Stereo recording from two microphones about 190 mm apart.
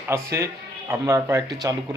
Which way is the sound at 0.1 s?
15° right (ahead or behind).